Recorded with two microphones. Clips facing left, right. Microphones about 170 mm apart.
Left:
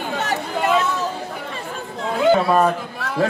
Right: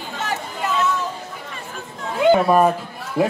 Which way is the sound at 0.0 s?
65° left (ahead or behind).